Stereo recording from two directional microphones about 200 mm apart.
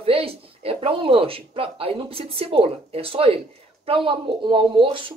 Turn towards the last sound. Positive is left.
turn(degrees=-25)  # may be behind; listen again after turning